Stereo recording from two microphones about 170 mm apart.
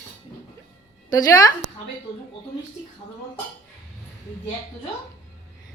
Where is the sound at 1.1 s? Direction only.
20° left (ahead or behind).